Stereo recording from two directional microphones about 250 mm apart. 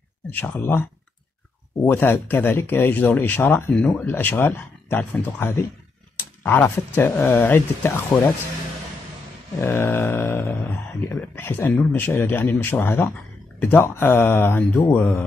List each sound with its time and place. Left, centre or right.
0.3 s speech: centre
1.9 s speech: centre
9.6 s speech: centre